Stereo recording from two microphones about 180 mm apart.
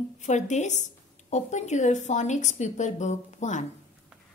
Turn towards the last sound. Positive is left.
turn(degrees=40)  # may be behind; listen again after turning